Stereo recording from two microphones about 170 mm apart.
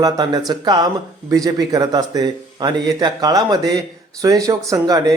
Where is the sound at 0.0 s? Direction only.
25° right (ahead or behind).